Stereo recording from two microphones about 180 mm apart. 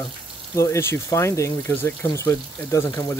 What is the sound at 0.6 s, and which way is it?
Speech, 15° left (ahead or behind).